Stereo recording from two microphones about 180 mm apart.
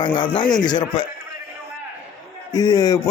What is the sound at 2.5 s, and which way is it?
Speech, 20° left (ahead or behind).